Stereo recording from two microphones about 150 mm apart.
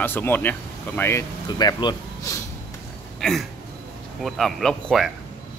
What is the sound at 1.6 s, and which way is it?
Speech, 30° left (ahead or behind).